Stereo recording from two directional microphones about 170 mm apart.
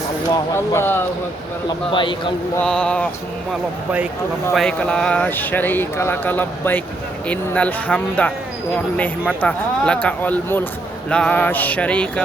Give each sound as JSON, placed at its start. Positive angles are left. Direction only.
{"t": 0.3, "sound": "speech", "side_deg": 15}
{"t": 1.9, "sound": "a man's voice", "side_deg": 30}
{"t": 2.6, "sound": "a sound", "side_deg": 5}
{"t": 4.5, "sound": "speech", "side_deg": 5}